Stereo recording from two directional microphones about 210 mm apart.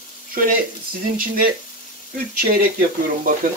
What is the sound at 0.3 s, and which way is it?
Speech, 40° right (ahead or behind).